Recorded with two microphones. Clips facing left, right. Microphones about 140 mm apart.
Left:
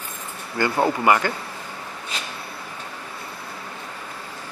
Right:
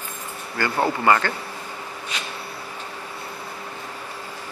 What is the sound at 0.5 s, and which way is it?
Speech, 15° left (ahead or behind).